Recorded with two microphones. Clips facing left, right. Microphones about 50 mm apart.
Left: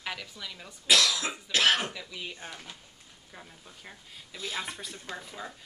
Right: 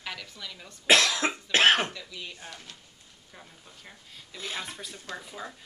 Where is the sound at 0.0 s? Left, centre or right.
Centre.